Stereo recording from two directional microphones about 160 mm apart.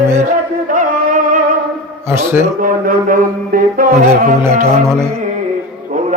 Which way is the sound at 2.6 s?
60° right (ahead or behind).